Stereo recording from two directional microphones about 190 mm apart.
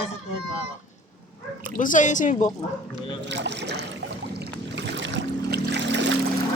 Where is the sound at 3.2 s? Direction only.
65° right (ahead or behind).